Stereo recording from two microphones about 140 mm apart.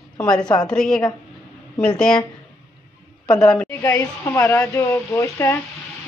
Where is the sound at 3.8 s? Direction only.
20° left (ahead or behind).